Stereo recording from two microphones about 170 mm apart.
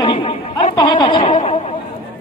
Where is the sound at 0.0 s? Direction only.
30° left (ahead or behind).